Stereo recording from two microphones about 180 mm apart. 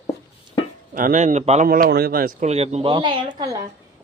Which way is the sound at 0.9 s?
50° right (ahead or behind).